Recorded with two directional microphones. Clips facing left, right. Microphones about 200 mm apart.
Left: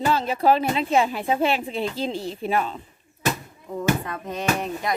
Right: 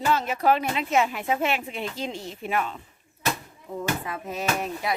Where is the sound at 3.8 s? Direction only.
5° right (ahead or behind).